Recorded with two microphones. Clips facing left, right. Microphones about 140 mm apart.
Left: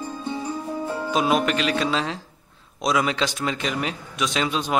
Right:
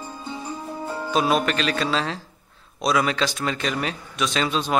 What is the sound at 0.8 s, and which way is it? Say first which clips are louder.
Speech: right 1 dB; 15° left (ahead or behind).